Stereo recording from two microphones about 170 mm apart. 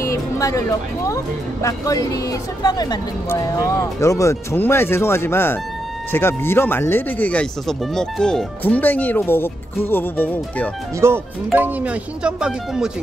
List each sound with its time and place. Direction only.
0.0 s speech: 20° left (ahead or behind)
11.0 s speech: 10° right (ahead or behind)